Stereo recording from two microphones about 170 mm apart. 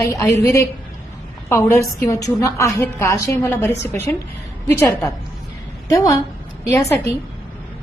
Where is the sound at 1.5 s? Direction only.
15° left (ahead or behind).